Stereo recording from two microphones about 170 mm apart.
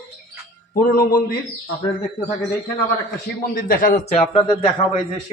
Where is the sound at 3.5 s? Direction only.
60° left (ahead or behind).